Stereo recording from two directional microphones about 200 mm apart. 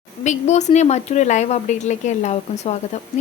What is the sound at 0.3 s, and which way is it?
Speech, 35° left (ahead or behind).